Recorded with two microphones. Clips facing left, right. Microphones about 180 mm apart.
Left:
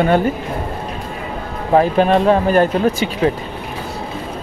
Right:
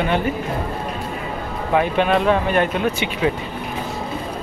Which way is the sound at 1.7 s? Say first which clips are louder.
Left 5 dB; 35° left (ahead or behind).